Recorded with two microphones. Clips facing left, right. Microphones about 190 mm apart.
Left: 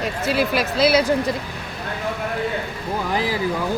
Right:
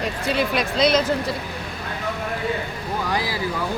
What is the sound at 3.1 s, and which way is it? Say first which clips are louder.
Speech: left 5 dB; 15° left (ahead or behind).